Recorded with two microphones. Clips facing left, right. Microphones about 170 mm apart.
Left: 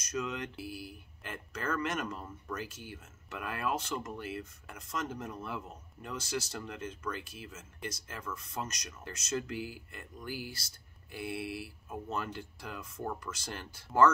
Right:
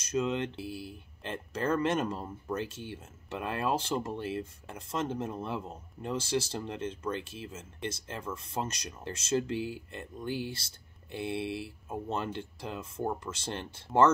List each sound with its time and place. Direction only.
0.0 s speech: 30° right (ahead or behind)